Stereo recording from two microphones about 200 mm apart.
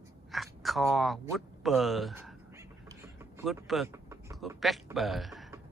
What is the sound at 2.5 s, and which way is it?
Vehicle, 15° right (ahead or behind).